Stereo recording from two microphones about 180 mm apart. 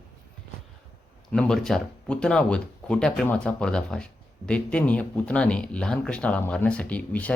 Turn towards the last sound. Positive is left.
turn(degrees=10)  # may be behind; listen again after turning